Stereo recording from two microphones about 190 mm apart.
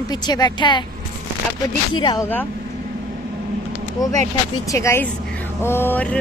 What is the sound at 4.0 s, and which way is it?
Speech, 20° left (ahead or behind).